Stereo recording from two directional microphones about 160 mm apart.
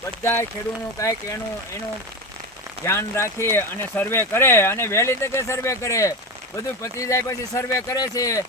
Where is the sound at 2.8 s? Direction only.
15° left (ahead or behind).